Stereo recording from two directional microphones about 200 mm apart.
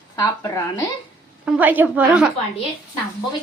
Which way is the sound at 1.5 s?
10° right (ahead or behind).